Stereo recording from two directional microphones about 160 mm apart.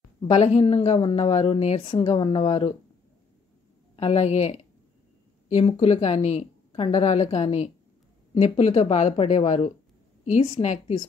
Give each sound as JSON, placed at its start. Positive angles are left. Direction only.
{"t": 0.3, "sound": "speech", "side_deg": 40}
{"t": 3.9, "sound": "speech", "side_deg": 35}